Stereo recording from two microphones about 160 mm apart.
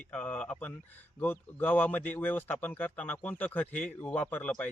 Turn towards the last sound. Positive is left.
turn(degrees=10)  # may be behind; listen again after turning